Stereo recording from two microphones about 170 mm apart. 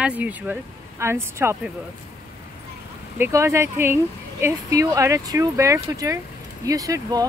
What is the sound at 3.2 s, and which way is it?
Speech, 15° right (ahead or behind).